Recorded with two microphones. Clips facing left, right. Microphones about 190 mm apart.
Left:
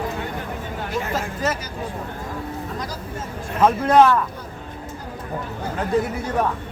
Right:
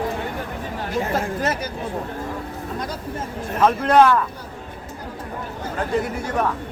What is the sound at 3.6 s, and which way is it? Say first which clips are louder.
Speech: even; 10° left (ahead or behind).